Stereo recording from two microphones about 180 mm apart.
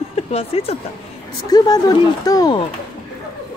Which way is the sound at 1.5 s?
20° left (ahead or behind).